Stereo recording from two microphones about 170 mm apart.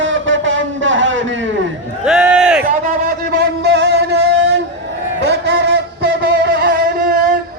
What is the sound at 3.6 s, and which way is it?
Music, 90° right.